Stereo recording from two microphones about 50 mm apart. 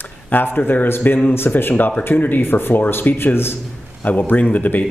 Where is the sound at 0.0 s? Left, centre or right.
Left.